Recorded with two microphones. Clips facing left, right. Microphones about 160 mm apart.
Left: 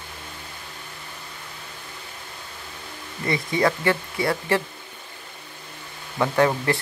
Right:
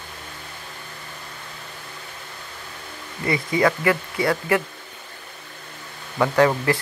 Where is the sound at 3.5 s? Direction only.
30° left (ahead or behind).